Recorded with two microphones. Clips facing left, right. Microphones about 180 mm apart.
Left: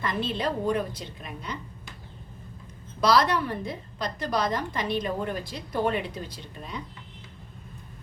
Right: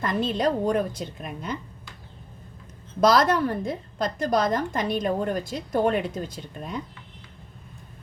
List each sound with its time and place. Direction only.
0.0 s a woman's voice: 45° right (ahead or behind)
3.0 s a woman's voice: 45° right (ahead or behind)